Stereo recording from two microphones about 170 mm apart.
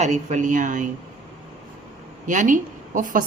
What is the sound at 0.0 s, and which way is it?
Speech, 45° right (ahead or behind).